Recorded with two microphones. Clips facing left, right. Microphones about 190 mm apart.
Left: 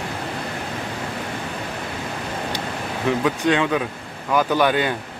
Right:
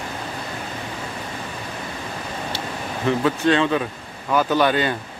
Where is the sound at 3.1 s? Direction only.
10° left (ahead or behind).